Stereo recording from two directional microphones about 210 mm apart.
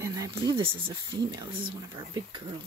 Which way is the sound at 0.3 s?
25° right (ahead or behind).